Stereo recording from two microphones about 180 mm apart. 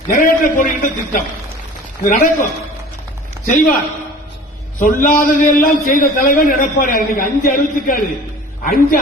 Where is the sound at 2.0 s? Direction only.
45° left (ahead or behind).